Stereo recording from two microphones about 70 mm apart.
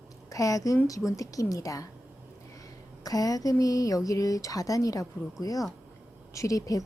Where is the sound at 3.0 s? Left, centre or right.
Left.